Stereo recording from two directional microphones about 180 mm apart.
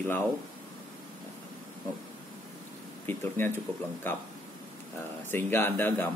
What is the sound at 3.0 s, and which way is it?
Speech, 10° left (ahead or behind).